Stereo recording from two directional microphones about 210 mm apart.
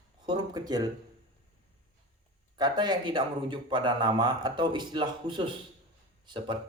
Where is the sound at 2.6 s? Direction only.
20° right (ahead or behind).